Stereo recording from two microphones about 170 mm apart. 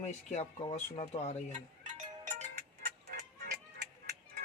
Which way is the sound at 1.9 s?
45° right (ahead or behind).